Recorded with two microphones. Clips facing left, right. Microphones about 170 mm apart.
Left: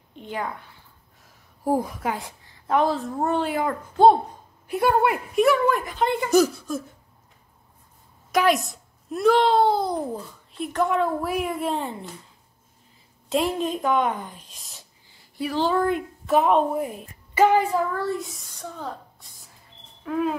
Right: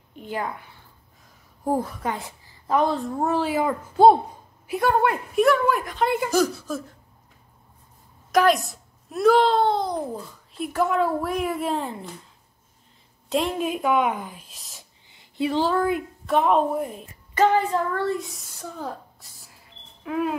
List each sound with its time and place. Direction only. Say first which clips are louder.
0.1 s a woman's voice: right 1 dB; 5° right (ahead or behind)
1.6 s a woman's voice: left 1 dB; 10° left (ahead or behind); by 4.7 s 10° right (ahead or behind)
4.7 s a child's voice: left 1 dB; 5° left (ahead or behind)
8.3 s a child's voice: right 2 dB; centre (ahead or behind)
13.3 s a child's voice: left 1 dB; centre (ahead or behind)
15.0 s a sound: right 4 dB; 20° right (ahead or behind)
15.6 s a child's voice: left 4 dB; centre (ahead or behind)
17.9 s a child's voice: right 2 dB; centre (ahead or behind)
20.1 s a woman's voice: left 1 dB; 10° right (ahead or behind)